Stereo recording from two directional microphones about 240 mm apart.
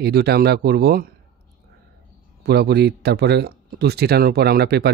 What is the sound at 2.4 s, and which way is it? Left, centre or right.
Speech, right.